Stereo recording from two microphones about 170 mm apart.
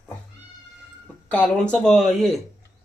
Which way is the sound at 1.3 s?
5° left (ahead or behind).